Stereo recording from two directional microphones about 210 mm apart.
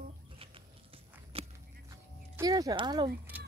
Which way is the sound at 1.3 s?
30° right (ahead or behind).